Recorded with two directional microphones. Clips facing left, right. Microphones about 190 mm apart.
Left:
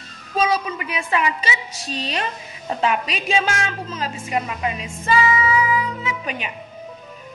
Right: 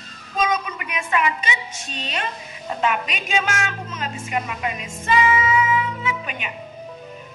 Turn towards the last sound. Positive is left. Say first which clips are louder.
# left 1 dB
turn(degrees=35)  # may be behind; listen again after turning